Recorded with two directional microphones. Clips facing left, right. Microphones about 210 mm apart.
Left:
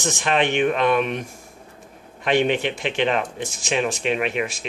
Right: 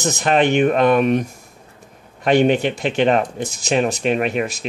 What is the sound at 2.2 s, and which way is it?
Speech, 40° right (ahead or behind).